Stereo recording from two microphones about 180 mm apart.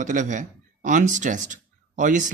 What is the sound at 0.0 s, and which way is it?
A man's voice, 45° right (ahead or behind).